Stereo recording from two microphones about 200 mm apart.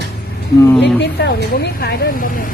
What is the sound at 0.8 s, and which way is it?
A woman's voice, 55° left (ahead or behind).